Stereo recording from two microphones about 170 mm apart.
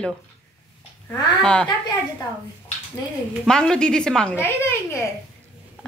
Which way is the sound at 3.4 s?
5° left (ahead or behind).